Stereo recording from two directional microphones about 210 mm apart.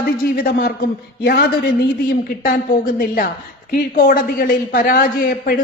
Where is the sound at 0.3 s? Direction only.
45° left (ahead or behind).